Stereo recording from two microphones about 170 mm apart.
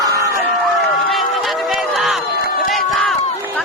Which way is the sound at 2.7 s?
Centre (ahead or behind).